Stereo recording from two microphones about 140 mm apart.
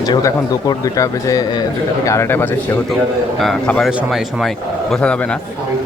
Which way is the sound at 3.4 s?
5° left (ahead or behind).